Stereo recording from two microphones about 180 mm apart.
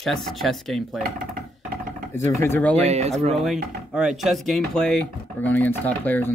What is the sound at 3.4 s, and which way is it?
Speech, centre (ahead or behind).